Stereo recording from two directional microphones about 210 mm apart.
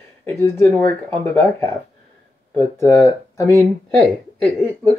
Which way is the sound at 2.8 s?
15° left (ahead or behind).